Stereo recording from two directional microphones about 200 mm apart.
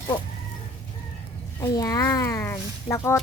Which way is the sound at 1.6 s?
20° left (ahead or behind).